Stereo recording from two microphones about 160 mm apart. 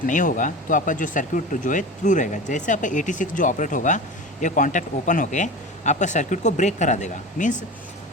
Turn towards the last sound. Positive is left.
turn(degrees=50)  # may be behind; listen again after turning